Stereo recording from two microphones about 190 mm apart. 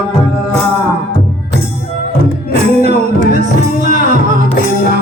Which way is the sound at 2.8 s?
40° right (ahead or behind).